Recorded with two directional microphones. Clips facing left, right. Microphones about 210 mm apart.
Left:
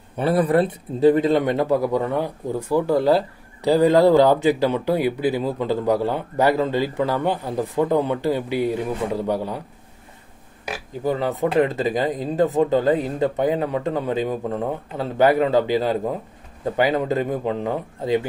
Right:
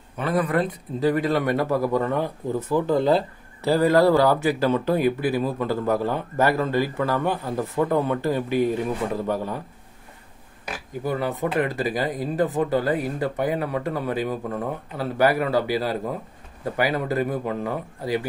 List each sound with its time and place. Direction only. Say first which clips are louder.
0.2 s speech: left 5 dB; 35° left (ahead or behind); by 9.6 s 15° left (ahead or behind)
11.1 s speech: left 4 dB; 20° left (ahead or behind)